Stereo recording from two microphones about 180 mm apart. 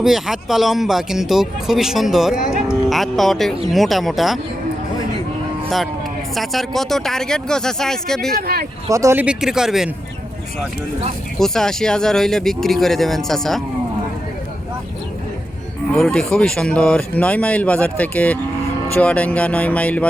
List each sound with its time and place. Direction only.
0.0 s speech: centre (ahead or behind)
2.6 s music: centre (ahead or behind)
3.7 s speech: centre (ahead or behind)
6.3 s speech: centre (ahead or behind)
8.4 s speech: 55° right (ahead or behind)
8.9 s speech: 15° right (ahead or behind)
11.3 s speech: centre (ahead or behind)
15.9 s speech: 5° left (ahead or behind)